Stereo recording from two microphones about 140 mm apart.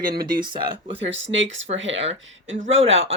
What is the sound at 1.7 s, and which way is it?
Speech, 65° right (ahead or behind).